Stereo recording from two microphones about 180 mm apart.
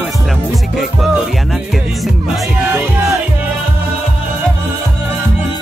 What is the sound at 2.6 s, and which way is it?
Music, 10° right (ahead or behind).